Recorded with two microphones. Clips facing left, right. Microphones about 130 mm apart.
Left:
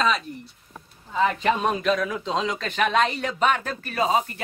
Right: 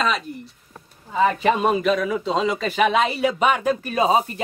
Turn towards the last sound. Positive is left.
turn(degrees=-20)  # may be behind; listen again after turning